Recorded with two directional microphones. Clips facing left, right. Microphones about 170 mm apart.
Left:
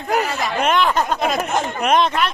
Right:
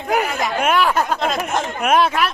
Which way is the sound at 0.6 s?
5° right (ahead or behind).